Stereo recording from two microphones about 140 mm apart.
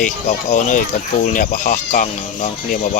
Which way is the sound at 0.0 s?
60° left (ahead or behind).